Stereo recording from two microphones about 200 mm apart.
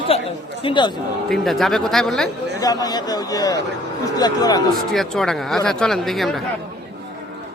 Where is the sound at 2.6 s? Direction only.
20° left (ahead or behind).